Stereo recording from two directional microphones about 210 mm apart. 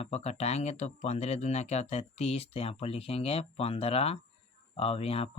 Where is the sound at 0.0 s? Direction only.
30° left (ahead or behind).